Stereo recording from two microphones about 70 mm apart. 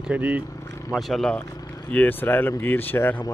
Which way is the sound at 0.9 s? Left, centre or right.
Centre.